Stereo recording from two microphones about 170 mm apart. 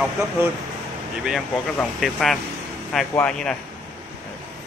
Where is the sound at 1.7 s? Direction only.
Centre (ahead or behind).